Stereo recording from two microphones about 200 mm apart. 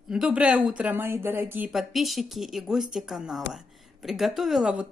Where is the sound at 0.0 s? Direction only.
5° right (ahead or behind).